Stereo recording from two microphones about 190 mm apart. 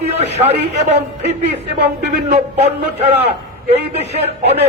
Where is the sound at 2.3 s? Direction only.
35° right (ahead or behind).